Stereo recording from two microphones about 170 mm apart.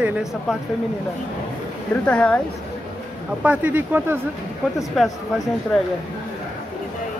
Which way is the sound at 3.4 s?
10° right (ahead or behind).